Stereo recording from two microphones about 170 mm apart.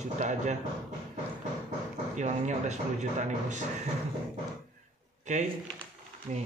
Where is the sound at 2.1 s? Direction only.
45° right (ahead or behind).